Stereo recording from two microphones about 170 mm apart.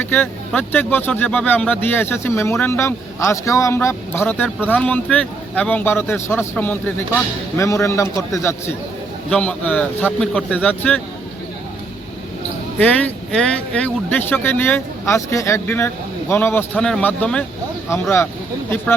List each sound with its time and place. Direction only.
0.0 s speech: 10° left (ahead or behind)
12.8 s speech: 10° left (ahead or behind)